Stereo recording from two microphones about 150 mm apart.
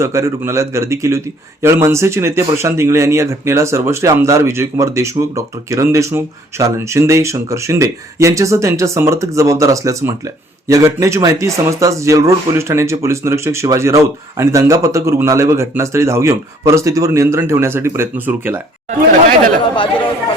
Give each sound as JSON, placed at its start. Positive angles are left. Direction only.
{"t": 0.0, "sound": "speech", "side_deg": -20}